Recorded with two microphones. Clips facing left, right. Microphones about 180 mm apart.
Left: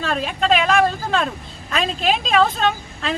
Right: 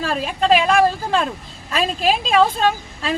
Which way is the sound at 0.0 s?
5° right (ahead or behind).